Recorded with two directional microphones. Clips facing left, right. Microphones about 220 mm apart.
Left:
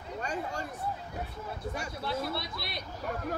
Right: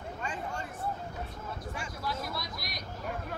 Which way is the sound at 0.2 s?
40° left (ahead or behind).